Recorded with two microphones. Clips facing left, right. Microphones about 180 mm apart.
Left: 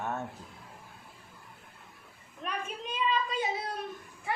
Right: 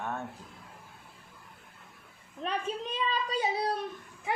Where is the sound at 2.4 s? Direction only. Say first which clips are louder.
Right 4 dB; 35° right (ahead or behind).